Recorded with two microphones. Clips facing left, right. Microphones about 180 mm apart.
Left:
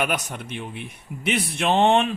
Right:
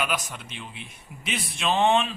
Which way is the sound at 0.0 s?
55° left (ahead or behind).